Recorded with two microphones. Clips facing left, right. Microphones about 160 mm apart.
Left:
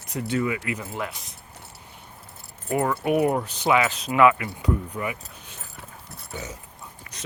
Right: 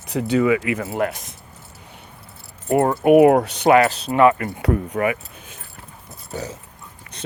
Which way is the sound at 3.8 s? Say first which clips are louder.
Right 3 dB; 35° right (ahead or behind).